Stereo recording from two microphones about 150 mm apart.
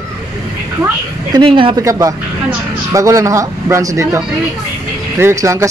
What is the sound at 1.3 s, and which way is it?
Speech, 35° right (ahead or behind).